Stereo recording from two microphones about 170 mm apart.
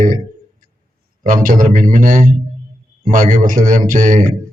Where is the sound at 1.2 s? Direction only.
50° right (ahead or behind).